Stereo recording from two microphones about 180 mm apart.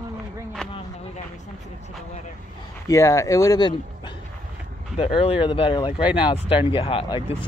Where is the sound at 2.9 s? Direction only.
15° left (ahead or behind).